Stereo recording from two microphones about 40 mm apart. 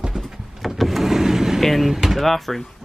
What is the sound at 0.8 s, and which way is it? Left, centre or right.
Vehicle, centre.